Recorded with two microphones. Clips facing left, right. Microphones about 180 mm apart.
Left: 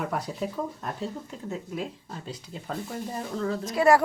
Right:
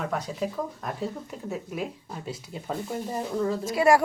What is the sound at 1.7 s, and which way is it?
A woman's voice, 10° right (ahead or behind).